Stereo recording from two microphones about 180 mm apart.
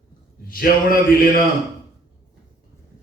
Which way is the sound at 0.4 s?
50° left (ahead or behind).